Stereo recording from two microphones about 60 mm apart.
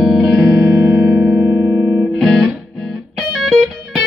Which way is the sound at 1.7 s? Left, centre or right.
Left.